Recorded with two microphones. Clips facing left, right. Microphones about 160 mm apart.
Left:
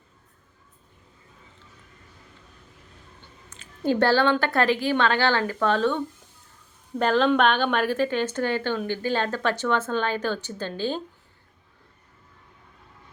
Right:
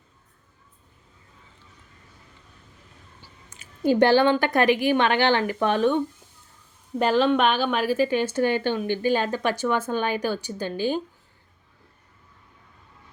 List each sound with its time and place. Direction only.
3.2 s a woman's voice: 10° right (ahead or behind)
7.0 s speech: 5° right (ahead or behind)